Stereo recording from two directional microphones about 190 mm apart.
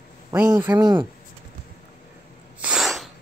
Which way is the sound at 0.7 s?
20° right (ahead or behind).